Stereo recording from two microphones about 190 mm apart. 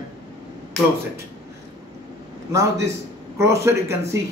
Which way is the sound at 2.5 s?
15° right (ahead or behind).